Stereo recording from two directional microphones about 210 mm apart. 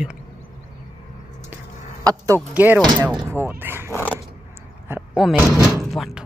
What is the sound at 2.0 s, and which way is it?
Speech, 15° right (ahead or behind).